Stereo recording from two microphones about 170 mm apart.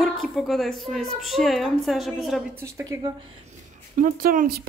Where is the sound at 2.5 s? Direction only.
20° right (ahead or behind).